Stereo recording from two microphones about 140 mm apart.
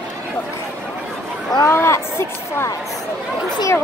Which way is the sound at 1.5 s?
20° left (ahead or behind).